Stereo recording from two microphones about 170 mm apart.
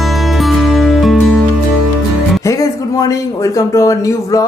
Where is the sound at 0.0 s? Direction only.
Centre (ahead or behind).